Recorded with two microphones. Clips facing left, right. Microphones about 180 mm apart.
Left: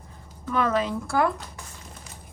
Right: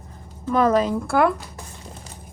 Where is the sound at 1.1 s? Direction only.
65° right (ahead or behind).